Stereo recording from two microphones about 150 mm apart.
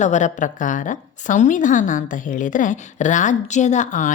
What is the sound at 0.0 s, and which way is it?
A woman's voice, 55° left (ahead or behind).